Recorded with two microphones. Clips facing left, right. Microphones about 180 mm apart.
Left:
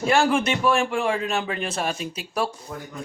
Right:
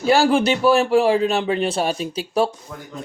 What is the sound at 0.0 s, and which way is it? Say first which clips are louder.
A man's voice: right 4 dB; 35° right (ahead or behind).